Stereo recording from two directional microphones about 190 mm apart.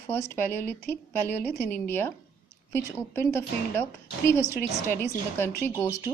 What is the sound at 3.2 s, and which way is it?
A woman's voice, 10° left (ahead or behind).